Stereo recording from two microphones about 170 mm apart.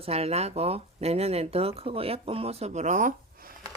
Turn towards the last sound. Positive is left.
turn(degrees=-45)  # may be behind; listen again after turning